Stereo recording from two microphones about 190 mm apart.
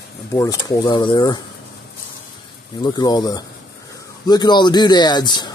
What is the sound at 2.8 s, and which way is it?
Speech, 20° left (ahead or behind).